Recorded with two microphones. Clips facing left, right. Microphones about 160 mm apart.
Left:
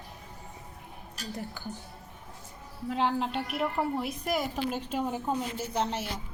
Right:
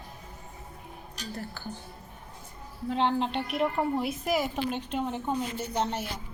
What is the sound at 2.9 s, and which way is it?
A woman's voice, 5° left (ahead or behind).